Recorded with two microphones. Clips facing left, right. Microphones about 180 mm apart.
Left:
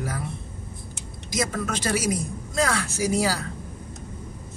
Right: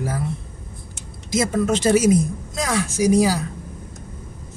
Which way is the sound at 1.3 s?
25° right (ahead or behind).